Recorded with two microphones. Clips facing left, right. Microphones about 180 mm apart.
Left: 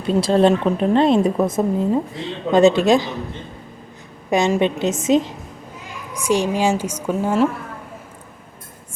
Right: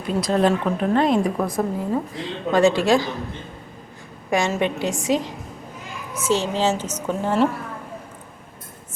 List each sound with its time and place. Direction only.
0.0 s a woman's voice: 30° left (ahead or behind)
4.3 s a woman's voice: 20° left (ahead or behind)
6.2 s a woman's voice: 15° left (ahead or behind)